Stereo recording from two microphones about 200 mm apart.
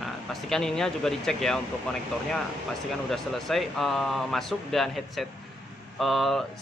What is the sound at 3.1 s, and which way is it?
Speech, centre (ahead or behind).